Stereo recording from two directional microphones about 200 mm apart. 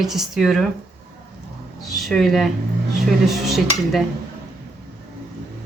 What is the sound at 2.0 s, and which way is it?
Speech, centre (ahead or behind).